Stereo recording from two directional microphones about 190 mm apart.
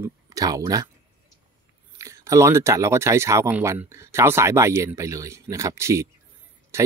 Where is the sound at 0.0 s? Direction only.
20° right (ahead or behind).